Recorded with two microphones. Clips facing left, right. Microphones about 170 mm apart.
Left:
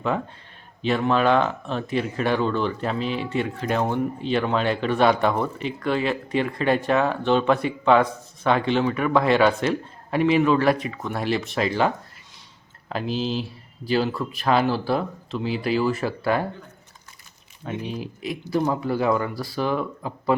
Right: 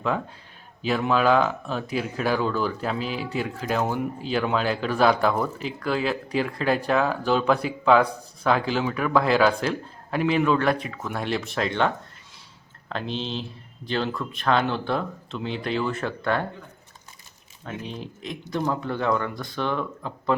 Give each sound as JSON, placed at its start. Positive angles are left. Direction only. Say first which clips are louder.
{"t": 0.8, "sound": "speech", "louder": "left 2 dB", "side_deg": -5}
{"t": 12.9, "sound": "speech", "louder": "left 4 dB", "side_deg": 5}
{"t": 17.7, "sound": "speech", "louder": "left 4 dB", "side_deg": 5}